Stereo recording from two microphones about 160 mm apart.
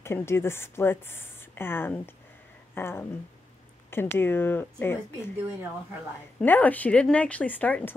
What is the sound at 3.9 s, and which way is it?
Speech, 15° left (ahead or behind).